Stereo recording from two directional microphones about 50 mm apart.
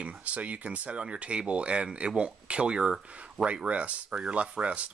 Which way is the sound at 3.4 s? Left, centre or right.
Right.